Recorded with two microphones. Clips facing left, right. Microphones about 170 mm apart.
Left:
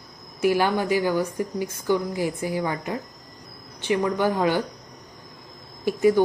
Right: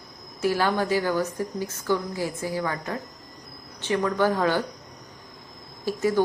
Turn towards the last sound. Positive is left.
turn(degrees=15)  # may be behind; listen again after turning